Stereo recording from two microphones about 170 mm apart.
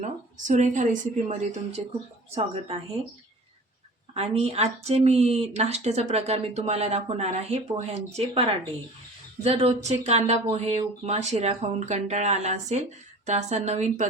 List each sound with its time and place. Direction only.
0.0 s a woman's voice: 45° right (ahead or behind)
4.1 s speech: 35° right (ahead or behind)